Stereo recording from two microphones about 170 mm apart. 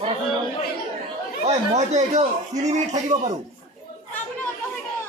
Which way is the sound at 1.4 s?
40° right (ahead or behind).